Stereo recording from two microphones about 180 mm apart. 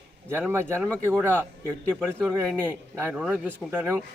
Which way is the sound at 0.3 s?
15° right (ahead or behind).